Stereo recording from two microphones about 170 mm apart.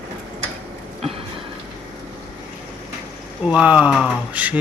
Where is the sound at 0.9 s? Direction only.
35° right (ahead or behind).